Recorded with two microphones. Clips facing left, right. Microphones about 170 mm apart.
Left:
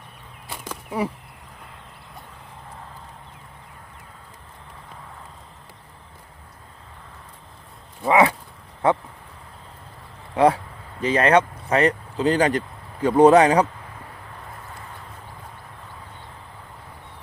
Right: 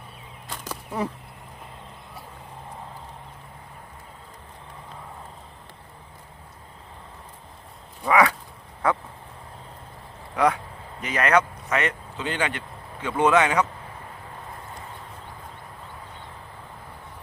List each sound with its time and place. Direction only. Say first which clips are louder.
0.9 s speech: left 3 dB; 10° left (ahead or behind)
8.0 s speech: left 3 dB; 25° left (ahead or behind)
8.8 s a sound: left 4 dB; 25° left (ahead or behind)
10.3 s speech: left 5 dB; 30° left (ahead or behind)